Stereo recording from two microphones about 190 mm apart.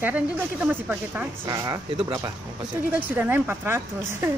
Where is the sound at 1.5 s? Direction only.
20° right (ahead or behind).